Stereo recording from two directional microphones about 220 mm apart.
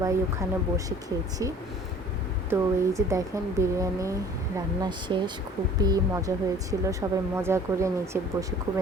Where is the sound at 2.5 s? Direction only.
15° right (ahead or behind).